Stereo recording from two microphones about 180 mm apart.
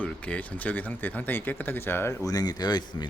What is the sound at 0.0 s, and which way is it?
Speech, 10° left (ahead or behind).